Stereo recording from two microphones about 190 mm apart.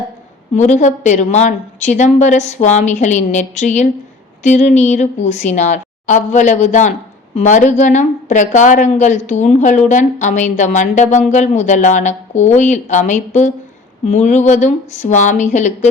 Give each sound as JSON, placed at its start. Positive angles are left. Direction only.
{"t": 0.5, "sound": "a woman's voice", "side_deg": 40}